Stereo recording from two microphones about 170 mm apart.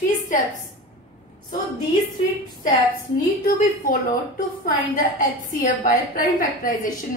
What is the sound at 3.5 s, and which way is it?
Speech, 55° left (ahead or behind).